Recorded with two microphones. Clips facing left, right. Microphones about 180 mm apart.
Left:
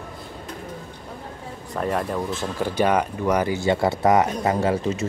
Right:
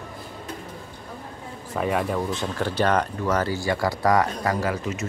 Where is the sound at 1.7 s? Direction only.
5° right (ahead or behind).